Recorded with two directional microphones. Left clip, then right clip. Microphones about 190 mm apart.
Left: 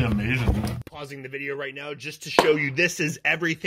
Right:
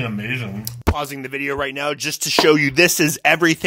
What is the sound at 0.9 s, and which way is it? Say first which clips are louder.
Speech: right 10 dB; 45° right (ahead or behind).